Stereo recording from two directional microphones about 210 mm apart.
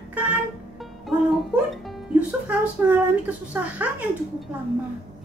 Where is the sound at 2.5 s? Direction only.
5° right (ahead or behind).